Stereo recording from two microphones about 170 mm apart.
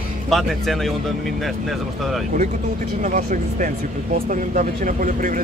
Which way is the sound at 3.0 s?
50° right (ahead or behind).